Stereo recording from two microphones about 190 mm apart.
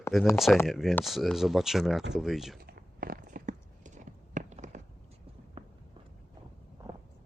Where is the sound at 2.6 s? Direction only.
55° right (ahead or behind); by 5.7 s 30° right (ahead or behind).